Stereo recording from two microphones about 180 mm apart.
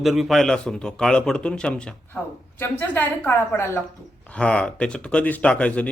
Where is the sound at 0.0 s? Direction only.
Centre (ahead or behind).